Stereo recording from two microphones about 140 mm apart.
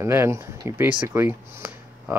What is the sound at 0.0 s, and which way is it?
Speech, 20° right (ahead or behind).